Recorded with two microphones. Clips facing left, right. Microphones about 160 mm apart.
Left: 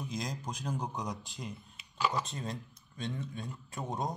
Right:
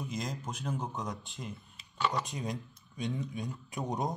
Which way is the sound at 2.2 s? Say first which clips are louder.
Right 2 dB; 15° right (ahead or behind).